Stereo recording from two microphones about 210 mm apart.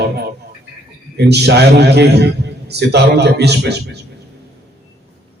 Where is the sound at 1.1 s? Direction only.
50° right (ahead or behind).